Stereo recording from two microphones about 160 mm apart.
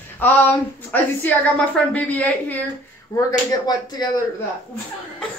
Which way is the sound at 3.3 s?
25° left (ahead or behind).